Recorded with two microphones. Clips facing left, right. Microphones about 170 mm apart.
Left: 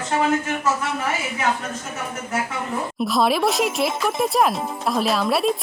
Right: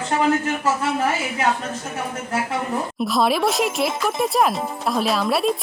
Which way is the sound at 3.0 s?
Centre (ahead or behind).